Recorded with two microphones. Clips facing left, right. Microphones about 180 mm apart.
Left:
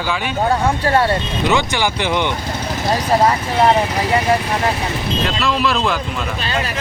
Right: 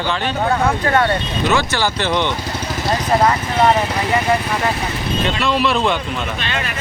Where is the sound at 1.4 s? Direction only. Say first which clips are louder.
Even; 15° left (ahead or behind).